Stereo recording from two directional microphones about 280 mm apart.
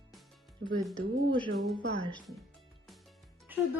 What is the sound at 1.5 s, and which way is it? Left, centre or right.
Speech, centre.